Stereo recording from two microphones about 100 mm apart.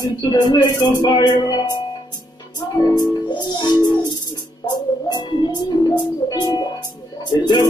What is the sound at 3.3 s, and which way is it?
Music, 45° left (ahead or behind).